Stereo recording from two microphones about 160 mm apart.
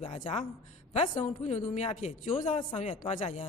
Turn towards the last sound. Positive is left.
turn(degrees=45)  # may be behind; listen again after turning